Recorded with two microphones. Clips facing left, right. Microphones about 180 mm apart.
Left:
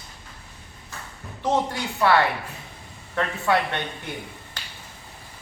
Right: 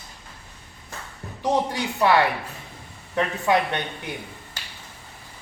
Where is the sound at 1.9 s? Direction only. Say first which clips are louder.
Right 1 dB; 15° right (ahead or behind).